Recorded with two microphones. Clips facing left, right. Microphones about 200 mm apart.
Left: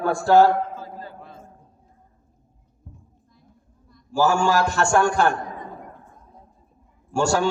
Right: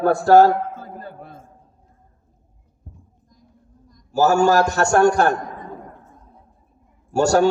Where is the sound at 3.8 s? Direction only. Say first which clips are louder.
Right 3 dB; 40° right (ahead or behind).